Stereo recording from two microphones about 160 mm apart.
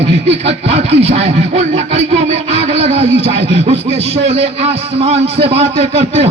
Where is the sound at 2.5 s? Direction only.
40° right (ahead or behind).